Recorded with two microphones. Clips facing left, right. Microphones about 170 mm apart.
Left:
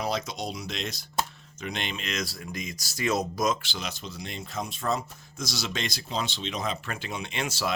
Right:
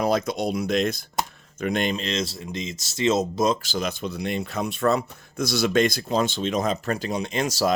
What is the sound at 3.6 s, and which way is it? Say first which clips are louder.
Speech: right 9 dB; 45° right (ahead or behind).